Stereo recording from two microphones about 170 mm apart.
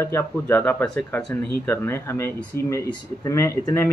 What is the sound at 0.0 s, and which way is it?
Speech, 15° left (ahead or behind).